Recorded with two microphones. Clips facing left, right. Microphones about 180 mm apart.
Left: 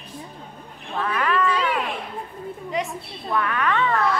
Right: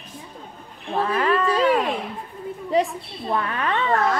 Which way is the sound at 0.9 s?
30° right (ahead or behind).